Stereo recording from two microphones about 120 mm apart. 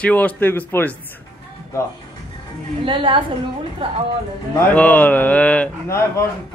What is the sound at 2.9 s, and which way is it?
A woman's voice, 45° right (ahead or behind).